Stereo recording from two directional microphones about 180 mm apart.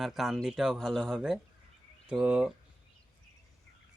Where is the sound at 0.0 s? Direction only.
Centre (ahead or behind).